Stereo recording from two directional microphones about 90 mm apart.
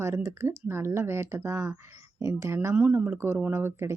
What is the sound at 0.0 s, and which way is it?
Speech, 30° right (ahead or behind).